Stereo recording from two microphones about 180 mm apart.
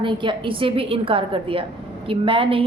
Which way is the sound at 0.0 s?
25° right (ahead or behind).